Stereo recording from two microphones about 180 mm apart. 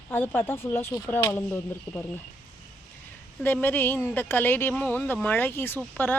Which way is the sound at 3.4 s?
10° left (ahead or behind).